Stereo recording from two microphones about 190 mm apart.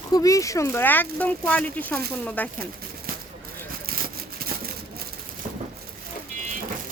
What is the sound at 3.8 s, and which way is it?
Vehicle, 55° right (ahead or behind).